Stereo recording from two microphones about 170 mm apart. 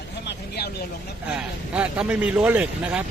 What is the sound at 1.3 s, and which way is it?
A man's voice, 5° right (ahead or behind).